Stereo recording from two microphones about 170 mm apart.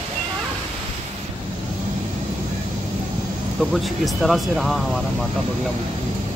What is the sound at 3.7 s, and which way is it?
Speech, centre (ahead or behind).